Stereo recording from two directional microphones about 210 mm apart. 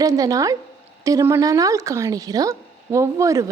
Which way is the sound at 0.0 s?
15° right (ahead or behind).